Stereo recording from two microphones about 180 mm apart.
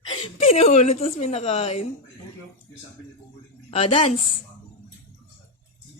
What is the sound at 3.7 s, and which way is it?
Speech, 35° left (ahead or behind).